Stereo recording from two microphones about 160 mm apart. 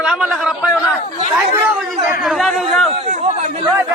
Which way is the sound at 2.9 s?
45° right (ahead or behind).